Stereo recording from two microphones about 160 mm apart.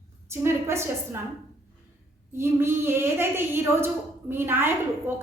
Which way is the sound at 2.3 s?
15° right (ahead or behind).